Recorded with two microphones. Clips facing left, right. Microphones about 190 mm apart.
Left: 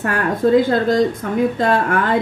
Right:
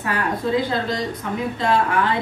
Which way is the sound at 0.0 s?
50° left (ahead or behind).